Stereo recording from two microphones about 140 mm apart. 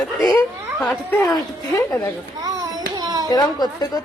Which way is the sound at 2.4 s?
25° right (ahead or behind).